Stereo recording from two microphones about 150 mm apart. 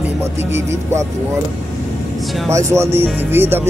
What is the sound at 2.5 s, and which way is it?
Speech, 20° right (ahead or behind).